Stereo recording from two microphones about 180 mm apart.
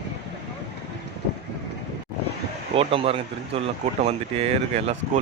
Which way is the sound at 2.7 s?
30° right (ahead or behind).